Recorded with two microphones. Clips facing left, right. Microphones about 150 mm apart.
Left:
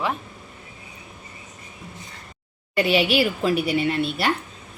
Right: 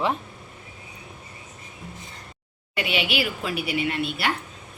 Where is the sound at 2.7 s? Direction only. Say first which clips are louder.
Left 7 dB; 40° left (ahead or behind).